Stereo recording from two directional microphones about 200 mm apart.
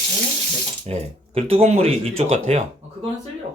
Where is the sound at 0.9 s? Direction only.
30° right (ahead or behind).